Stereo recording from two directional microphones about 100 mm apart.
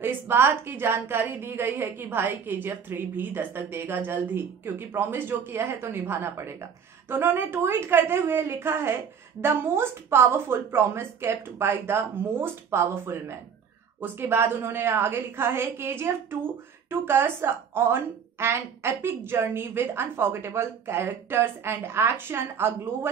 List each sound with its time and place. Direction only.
0.0 s a woman's voice: 20° right (ahead or behind)